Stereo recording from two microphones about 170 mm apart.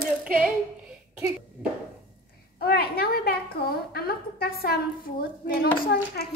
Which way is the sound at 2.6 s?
65° left (ahead or behind).